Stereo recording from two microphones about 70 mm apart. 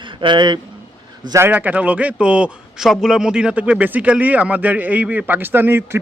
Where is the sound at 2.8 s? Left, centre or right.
Centre.